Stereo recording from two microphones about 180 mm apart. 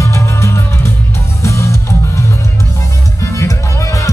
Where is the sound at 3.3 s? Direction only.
15° left (ahead or behind).